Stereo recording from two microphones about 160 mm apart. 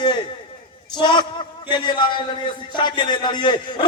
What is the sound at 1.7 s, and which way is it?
A man's voice, 30° left (ahead or behind).